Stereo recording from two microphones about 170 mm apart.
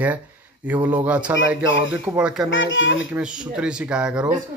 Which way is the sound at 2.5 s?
90° left.